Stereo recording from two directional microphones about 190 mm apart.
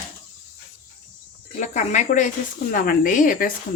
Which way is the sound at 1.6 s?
40° left (ahead or behind).